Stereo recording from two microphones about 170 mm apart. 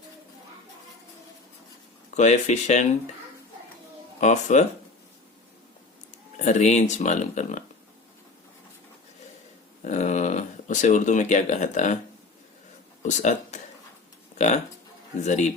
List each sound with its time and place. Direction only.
2.0 s speech: 45° left (ahead or behind)
4.2 s speech: 45° left (ahead or behind)
6.4 s speech: 45° left (ahead or behind)
9.8 s speech: 45° left (ahead or behind)
13.1 s speech: 45° left (ahead or behind)